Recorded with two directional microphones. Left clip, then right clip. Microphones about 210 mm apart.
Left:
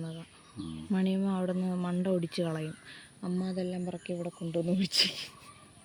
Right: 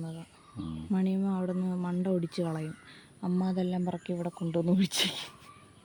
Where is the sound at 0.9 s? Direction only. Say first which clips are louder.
Even; 5° right (ahead or behind).